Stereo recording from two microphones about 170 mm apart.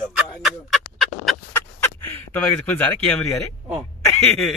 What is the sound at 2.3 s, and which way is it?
Speech, 10° left (ahead or behind).